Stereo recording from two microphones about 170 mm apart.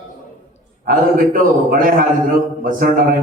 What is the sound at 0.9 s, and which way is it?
A man's voice, 55° right (ahead or behind).